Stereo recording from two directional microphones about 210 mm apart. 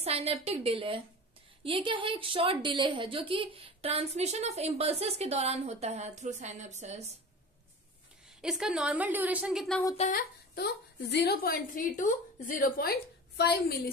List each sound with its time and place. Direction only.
0.0 s a woman's voice: 30° right (ahead or behind)
8.4 s a woman's voice: 5° right (ahead or behind)
9.9 s a woman's voice: 40° left (ahead or behind)